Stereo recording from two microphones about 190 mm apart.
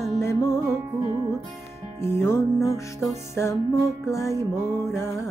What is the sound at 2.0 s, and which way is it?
Music, 15° left (ahead or behind).